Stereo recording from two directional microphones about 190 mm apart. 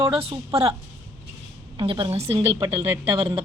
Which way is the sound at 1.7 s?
25° right (ahead or behind).